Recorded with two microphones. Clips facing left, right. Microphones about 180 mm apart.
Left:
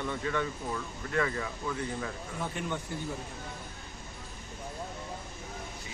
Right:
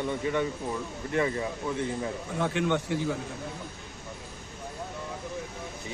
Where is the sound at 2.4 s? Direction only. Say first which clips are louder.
Right 9 dB; 90° right.